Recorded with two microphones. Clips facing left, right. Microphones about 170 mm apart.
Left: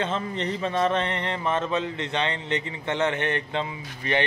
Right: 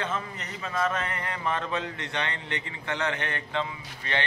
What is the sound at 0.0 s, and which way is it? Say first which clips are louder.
A man's voice: left 6 dB; 30° left (ahead or behind).